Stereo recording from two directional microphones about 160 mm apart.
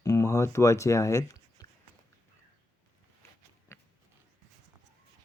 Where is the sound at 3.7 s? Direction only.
15° left (ahead or behind).